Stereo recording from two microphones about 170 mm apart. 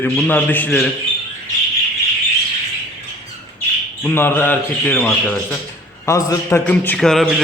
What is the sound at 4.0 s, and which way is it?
A man's voice, 15° left (ahead or behind).